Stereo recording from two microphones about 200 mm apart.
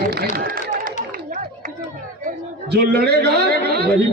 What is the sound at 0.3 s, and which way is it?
Run, 45° right (ahead or behind).